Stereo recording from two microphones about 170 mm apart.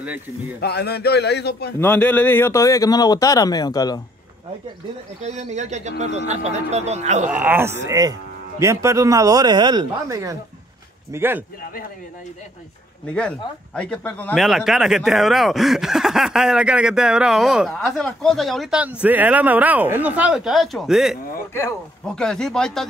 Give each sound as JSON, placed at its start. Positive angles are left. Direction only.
{"t": 0.6, "sound": "a man's voice", "side_deg": 70}
{"t": 1.8, "sound": "a man's voice", "side_deg": 10}
{"t": 5.2, "sound": "speech", "side_deg": -40}
{"t": 7.2, "sound": "speech", "side_deg": -10}
{"t": 13.0, "sound": "speech", "side_deg": 5}
{"t": 14.4, "sound": "speech", "side_deg": 0}